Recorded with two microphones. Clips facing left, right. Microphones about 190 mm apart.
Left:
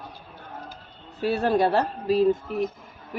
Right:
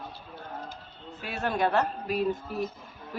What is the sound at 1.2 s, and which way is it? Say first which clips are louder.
Speech: left 7 dB; 35° left (ahead or behind).